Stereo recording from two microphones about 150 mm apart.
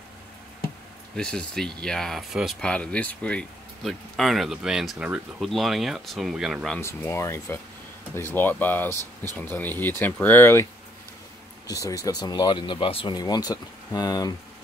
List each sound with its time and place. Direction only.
1.1 s speech: 5° left (ahead or behind)
6.8 s speech: 15° left (ahead or behind)